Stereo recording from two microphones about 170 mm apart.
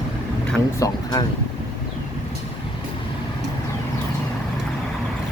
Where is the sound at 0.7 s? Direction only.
20° left (ahead or behind).